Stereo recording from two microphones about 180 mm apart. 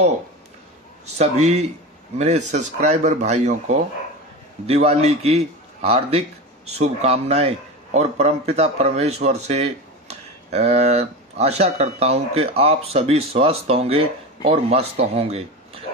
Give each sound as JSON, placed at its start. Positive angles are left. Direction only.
{"t": 1.0, "sound": "a man's voice", "side_deg": -35}